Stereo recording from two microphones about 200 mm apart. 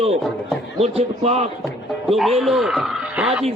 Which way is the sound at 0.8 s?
30° right (ahead or behind).